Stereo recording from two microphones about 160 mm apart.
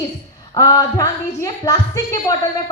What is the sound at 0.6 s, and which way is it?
A woman's voice, 20° left (ahead or behind).